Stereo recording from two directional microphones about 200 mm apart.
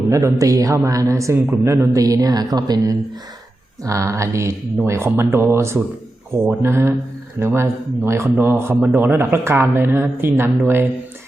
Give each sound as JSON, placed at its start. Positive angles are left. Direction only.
{"t": 0.1, "sound": "a man's voice", "side_deg": -15}